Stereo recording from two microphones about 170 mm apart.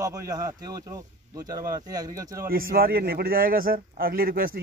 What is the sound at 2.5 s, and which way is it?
A man's voice, 60° right (ahead or behind).